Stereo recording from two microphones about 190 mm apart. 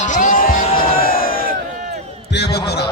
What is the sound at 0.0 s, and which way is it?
Music, 45° left (ahead or behind).